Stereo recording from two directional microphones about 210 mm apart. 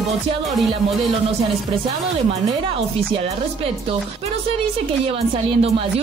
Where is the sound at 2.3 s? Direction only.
25° right (ahead or behind).